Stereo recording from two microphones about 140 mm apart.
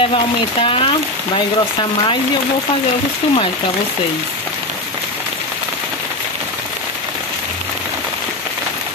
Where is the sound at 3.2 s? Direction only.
40° left (ahead or behind).